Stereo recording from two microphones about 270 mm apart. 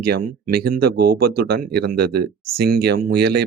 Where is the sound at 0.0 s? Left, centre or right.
Right.